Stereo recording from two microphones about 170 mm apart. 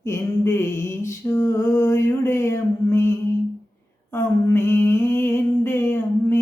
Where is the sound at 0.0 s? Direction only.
15° left (ahead or behind).